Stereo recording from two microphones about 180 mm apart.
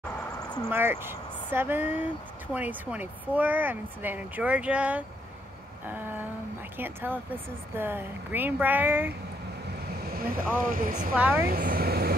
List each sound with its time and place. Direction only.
0.7 s speech: 10° right (ahead or behind)
10.0 s boat: 55° right (ahead or behind)
10.6 s speech: 50° right (ahead or behind)
11.1 s speech: 10° right (ahead or behind)
11.4 s speech: 55° right (ahead or behind)